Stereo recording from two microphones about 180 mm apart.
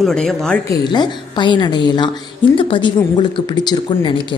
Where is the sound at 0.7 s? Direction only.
25° left (ahead or behind).